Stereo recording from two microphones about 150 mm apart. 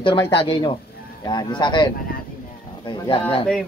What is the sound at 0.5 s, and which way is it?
Speech, 35° left (ahead or behind).